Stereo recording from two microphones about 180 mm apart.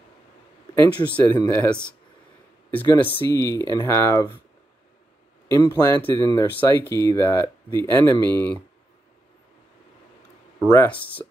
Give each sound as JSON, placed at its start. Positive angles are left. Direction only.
{"t": 0.7, "sound": "speech", "side_deg": 10}
{"t": 5.5, "sound": "speech", "side_deg": 15}
{"t": 10.7, "sound": "speech", "side_deg": 10}